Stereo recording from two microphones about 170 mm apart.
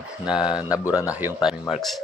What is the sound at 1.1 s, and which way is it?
Speech, 5° right (ahead or behind).